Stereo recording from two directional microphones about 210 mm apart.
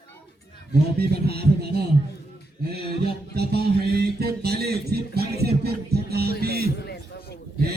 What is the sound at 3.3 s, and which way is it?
Speech, 50° right (ahead or behind).